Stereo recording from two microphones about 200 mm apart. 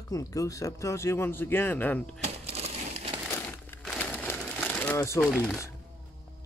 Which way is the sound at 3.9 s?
5° left (ahead or behind).